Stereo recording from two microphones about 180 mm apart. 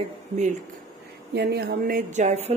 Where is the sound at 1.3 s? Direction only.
65° right (ahead or behind); by 2.6 s 40° right (ahead or behind).